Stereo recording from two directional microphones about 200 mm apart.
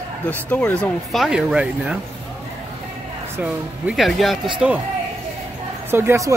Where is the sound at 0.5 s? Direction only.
5° left (ahead or behind).